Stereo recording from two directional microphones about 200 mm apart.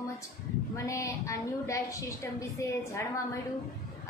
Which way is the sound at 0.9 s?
15° left (ahead or behind).